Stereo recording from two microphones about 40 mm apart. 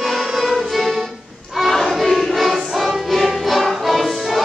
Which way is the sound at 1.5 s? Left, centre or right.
Centre.